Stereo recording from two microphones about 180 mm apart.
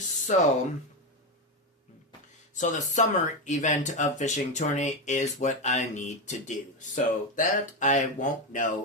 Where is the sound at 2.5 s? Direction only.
45° left (ahead or behind).